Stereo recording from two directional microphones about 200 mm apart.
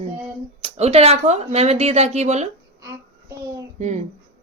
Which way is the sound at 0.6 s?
30° right (ahead or behind).